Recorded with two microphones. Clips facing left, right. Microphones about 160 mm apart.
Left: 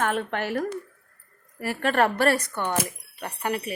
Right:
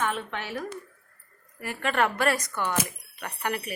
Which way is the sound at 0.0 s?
50° left (ahead or behind).